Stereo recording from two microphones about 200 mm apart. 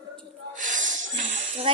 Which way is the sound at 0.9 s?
40° right (ahead or behind).